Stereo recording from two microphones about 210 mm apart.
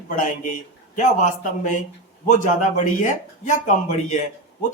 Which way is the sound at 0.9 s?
35° left (ahead or behind).